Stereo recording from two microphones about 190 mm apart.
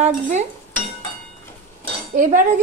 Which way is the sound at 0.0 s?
40° right (ahead or behind).